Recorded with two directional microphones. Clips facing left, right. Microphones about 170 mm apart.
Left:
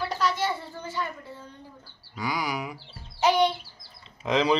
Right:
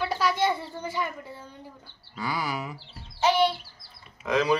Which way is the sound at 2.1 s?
15° left (ahead or behind).